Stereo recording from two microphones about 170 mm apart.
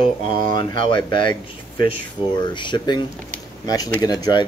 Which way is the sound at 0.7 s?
30° left (ahead or behind).